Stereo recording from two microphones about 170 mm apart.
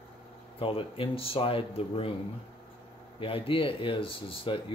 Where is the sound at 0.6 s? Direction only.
35° left (ahead or behind).